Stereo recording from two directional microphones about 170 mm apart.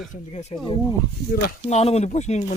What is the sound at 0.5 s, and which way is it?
Speech, 35° left (ahead or behind).